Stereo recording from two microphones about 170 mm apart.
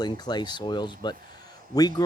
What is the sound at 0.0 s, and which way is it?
Speech, 25° left (ahead or behind).